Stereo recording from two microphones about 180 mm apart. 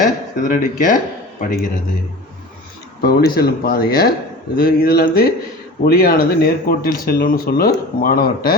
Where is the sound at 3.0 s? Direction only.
60° left (ahead or behind).